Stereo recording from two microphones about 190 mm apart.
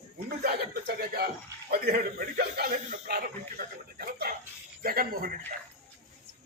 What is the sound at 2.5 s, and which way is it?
Speech, 50° right (ahead or behind).